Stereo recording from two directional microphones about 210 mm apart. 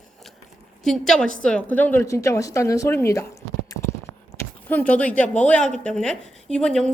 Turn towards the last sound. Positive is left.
turn(degrees=5)  # may be behind; listen again after turning